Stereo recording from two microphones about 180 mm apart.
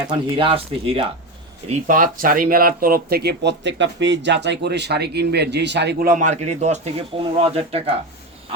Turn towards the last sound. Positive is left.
turn(degrees=-35)  # may be behind; listen again after turning